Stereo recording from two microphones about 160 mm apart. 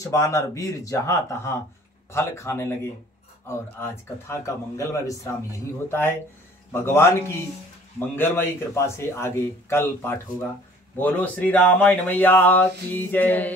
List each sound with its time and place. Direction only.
0.0 s speech: 20° left (ahead or behind)
8.7 s speech: 15° left (ahead or behind)